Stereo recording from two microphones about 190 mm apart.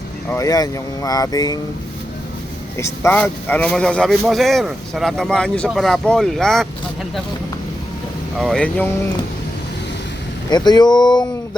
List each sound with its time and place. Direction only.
0.3 s speech: 15° left (ahead or behind)
2.7 s a man's voice: 15° left (ahead or behind)
8.4 s a man's voice: centre (ahead or behind)
10.5 s speech: 20° left (ahead or behind)